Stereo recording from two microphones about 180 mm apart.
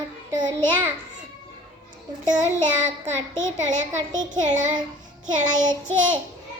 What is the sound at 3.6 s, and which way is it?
Speech, 45° right (ahead or behind).